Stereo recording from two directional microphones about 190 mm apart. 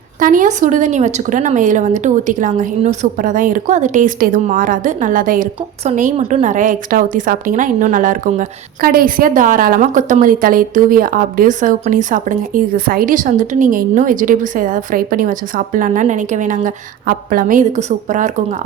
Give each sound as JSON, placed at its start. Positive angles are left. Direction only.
{"t": 0.2, "sound": "a woman's voice", "side_deg": -45}